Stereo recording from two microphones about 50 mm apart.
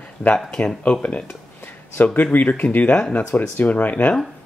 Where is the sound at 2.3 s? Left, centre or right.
Left.